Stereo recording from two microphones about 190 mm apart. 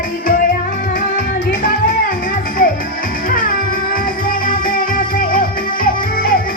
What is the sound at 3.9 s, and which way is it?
Music, 50° left (ahead or behind).